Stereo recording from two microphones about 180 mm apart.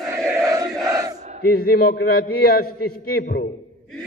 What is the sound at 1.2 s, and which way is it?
Battle cry, 40° right (ahead or behind).